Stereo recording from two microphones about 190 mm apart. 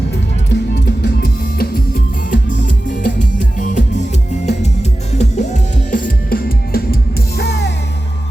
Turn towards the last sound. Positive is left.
turn(degrees=60)  # may be behind; listen again after turning